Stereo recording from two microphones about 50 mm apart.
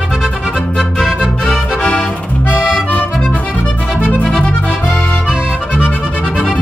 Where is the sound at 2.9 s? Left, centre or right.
Left.